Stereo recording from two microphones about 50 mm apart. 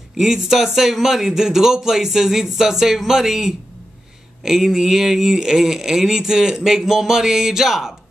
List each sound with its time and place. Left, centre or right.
0.2 s speech: centre